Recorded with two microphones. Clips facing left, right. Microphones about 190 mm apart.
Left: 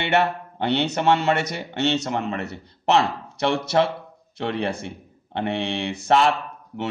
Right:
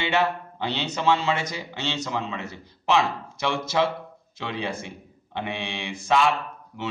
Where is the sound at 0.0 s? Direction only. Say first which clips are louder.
Left 3 dB; 60° left (ahead or behind).